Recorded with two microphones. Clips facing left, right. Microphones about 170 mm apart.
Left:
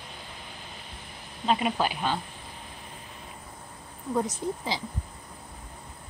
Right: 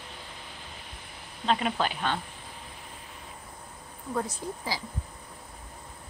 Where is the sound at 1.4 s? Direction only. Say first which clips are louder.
Left 1 dB; 10° left (ahead or behind).